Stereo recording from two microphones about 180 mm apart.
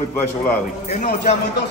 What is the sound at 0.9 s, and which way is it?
Speech, 40° left (ahead or behind).